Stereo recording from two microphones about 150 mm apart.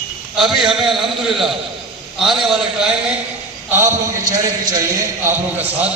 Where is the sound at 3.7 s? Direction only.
15° right (ahead or behind).